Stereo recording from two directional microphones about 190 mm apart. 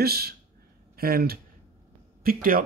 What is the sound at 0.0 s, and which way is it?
Speech, 55° right (ahead or behind).